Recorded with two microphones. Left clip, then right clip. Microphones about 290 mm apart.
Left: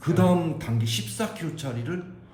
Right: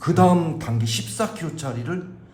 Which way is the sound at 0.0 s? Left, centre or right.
Right.